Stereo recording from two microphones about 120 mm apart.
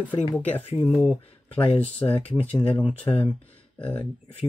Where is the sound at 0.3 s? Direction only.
10° left (ahead or behind).